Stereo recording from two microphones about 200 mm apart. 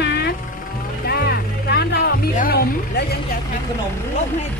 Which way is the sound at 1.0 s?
50° left (ahead or behind).